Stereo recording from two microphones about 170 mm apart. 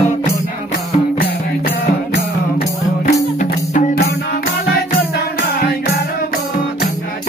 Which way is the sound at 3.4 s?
45° left (ahead or behind).